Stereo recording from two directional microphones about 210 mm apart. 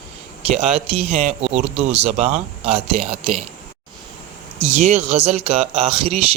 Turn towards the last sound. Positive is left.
turn(degrees=-30)  # may be behind; listen again after turning